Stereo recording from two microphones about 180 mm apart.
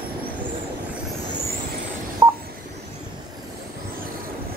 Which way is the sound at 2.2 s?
20° right (ahead or behind).